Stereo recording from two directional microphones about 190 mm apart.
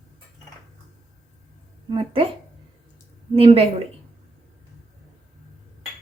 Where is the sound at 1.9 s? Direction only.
25° right (ahead or behind).